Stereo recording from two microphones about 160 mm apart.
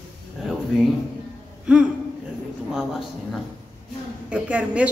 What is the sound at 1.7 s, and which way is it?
Speech, 5° right (ahead or behind).